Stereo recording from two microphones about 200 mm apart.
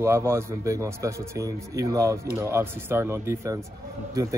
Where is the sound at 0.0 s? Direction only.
15° right (ahead or behind).